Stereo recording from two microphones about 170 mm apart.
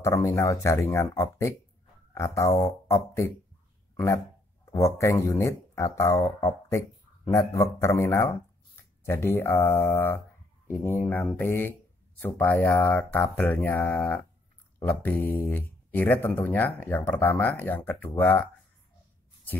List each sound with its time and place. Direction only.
0.0 s speech: 15° left (ahead or behind)
4.6 s speech: 15° left (ahead or behind)